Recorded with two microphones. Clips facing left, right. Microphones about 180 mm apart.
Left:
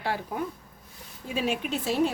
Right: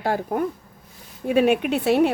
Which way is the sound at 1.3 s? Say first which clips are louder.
Right 10 dB; 60° right (ahead or behind).